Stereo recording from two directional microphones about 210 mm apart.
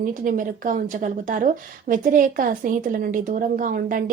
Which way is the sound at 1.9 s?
40° right (ahead or behind).